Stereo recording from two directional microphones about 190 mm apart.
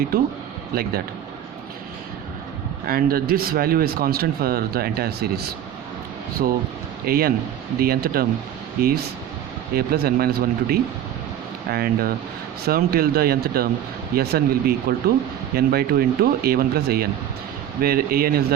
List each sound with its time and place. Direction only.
2.8 s speech: 50° right (ahead or behind)